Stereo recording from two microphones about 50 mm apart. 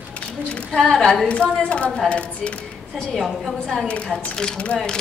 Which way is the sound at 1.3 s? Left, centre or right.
Left.